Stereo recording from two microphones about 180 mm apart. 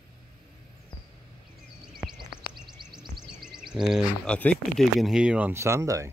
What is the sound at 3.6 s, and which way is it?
Speech, centre (ahead or behind).